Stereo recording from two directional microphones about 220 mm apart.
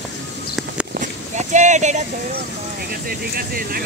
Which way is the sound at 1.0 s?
35° right (ahead or behind).